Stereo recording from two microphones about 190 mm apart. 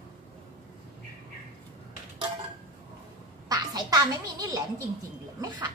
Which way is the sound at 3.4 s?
20° right (ahead or behind).